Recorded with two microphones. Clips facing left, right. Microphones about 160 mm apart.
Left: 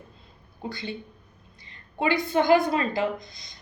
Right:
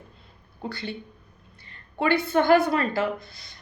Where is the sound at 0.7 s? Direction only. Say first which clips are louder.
Even; 20° left (ahead or behind).